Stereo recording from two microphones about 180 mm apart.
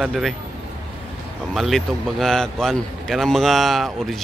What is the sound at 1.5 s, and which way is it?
A man's voice, centre (ahead or behind).